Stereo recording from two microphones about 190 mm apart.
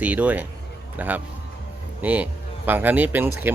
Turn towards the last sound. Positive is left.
turn(degrees=-10)  # may be behind; listen again after turning